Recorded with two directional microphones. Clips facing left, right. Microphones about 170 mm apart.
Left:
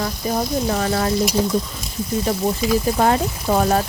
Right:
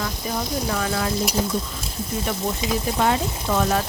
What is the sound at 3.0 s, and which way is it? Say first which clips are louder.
Speech: left 4 dB; 40° left (ahead or behind).